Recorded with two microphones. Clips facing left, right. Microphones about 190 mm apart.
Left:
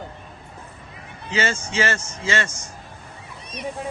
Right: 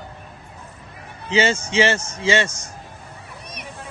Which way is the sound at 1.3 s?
20° right (ahead or behind).